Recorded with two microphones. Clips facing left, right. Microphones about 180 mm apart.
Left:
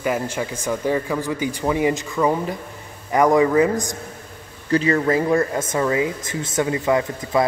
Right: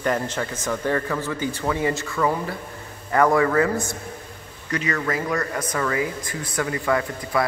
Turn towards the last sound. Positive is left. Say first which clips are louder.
# left 4 dB
turn(degrees=20)  # may be behind; listen again after turning